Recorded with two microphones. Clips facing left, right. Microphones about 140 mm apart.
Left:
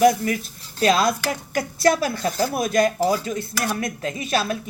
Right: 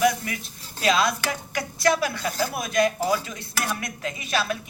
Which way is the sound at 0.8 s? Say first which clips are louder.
Left 4 dB; 40° left (ahead or behind).